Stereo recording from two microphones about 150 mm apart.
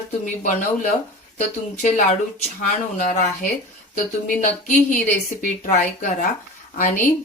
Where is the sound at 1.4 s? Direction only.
55° left (ahead or behind).